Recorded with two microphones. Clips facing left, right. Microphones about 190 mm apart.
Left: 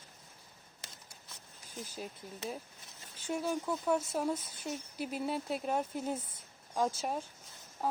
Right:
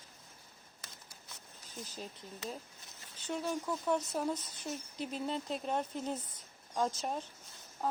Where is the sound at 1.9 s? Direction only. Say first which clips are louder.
Left 2 dB; 10° left (ahead or behind).